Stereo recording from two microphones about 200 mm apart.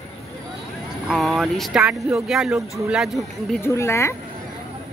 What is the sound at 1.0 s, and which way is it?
Speech, centre (ahead or behind).